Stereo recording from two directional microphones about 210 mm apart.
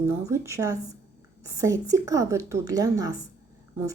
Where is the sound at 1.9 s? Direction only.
15° right (ahead or behind).